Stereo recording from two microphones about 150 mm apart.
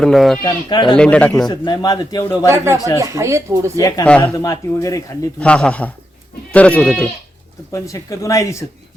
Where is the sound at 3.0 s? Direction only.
20° right (ahead or behind).